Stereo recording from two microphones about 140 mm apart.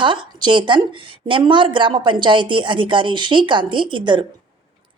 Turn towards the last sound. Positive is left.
turn(degrees=-35)  # may be behind; listen again after turning